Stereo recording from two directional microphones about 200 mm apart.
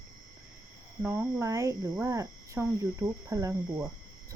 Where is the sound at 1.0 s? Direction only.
10° right (ahead or behind).